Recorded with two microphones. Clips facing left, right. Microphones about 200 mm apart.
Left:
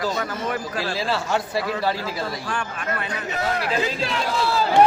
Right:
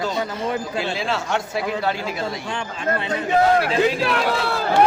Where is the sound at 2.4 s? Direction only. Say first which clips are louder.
Right 3 dB; 25° right (ahead or behind).